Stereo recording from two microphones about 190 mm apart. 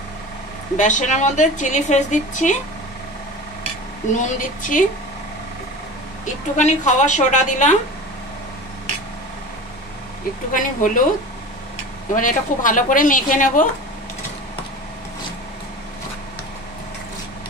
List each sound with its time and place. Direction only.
0.7 s a woman's voice: 40° left (ahead or behind)
4.1 s a woman's voice: 40° left (ahead or behind)
6.2 s a woman's voice: 40° left (ahead or behind)
10.5 s a woman's voice: 45° left (ahead or behind)
12.1 s a woman's voice: 45° left (ahead or behind)